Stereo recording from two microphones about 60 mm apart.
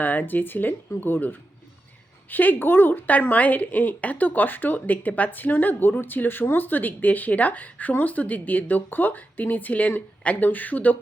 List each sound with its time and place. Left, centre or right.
0.0 s a woman's voice: left